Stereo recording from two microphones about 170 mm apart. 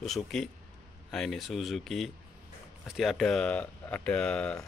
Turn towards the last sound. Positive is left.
turn(degrees=5)  # may be behind; listen again after turning